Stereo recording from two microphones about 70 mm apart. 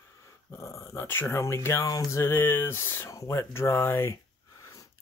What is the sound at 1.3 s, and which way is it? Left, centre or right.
Speech, left.